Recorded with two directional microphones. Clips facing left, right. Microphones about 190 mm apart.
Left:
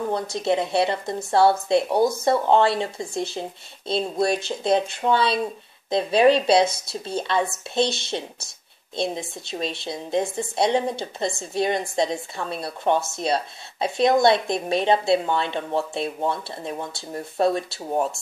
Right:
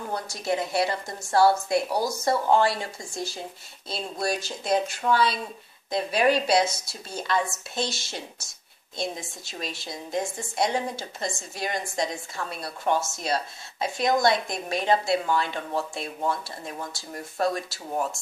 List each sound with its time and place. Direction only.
0.1 s speech: 25° left (ahead or behind)
6.6 s a woman's voice: 55° left (ahead or behind)
7.1 s speech: 25° left (ahead or behind)
8.9 s speech: 25° left (ahead or behind)